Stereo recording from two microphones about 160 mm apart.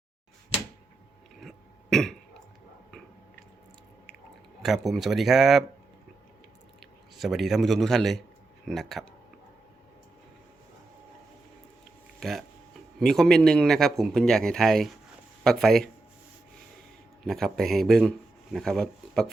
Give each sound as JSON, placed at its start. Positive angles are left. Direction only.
{"t": 1.4, "sound": "cough", "side_deg": 0}
{"t": 4.6, "sound": "a man's voice", "side_deg": 0}
{"t": 6.7, "sound": "a man's voice", "side_deg": 0}
{"t": 12.2, "sound": "a man's voice", "side_deg": 0}
{"t": 17.2, "sound": "a man's voice", "side_deg": 0}